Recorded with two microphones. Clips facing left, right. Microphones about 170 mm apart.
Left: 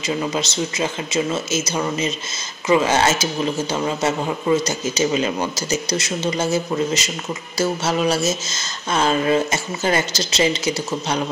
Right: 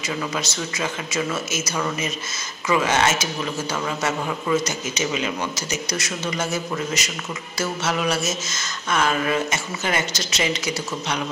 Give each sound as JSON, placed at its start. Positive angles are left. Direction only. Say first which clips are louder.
{"t": 0.0, "sound": "a man's voice", "louder": "left 4 dB", "side_deg": 25}